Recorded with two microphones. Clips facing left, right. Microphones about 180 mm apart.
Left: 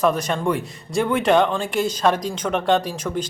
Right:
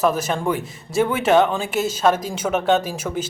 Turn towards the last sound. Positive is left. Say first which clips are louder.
# even
turn(degrees=-5)  # may be behind; listen again after turning